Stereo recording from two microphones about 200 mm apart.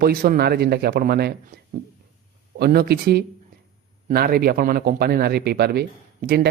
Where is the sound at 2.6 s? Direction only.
50° right (ahead or behind).